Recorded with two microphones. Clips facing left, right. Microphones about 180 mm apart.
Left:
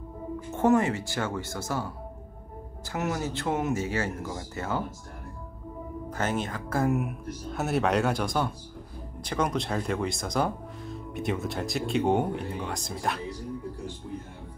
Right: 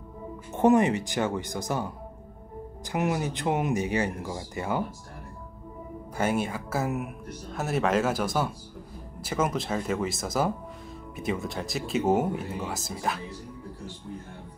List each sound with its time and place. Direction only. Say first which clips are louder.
0.5 s speech: right 2 dB; 20° right (ahead or behind)
2.9 s speech: right 2 dB; 15° right (ahead or behind)
6.1 s speech: right 3 dB; 10° right (ahead or behind)